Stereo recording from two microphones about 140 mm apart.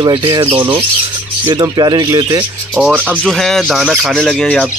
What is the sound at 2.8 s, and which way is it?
Speech, 15° right (ahead or behind).